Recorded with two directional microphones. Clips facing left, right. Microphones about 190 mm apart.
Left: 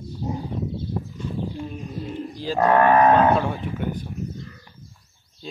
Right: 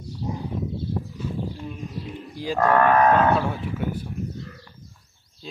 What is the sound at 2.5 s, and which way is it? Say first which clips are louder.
Speech: left 2 dB; 15° left (ahead or behind).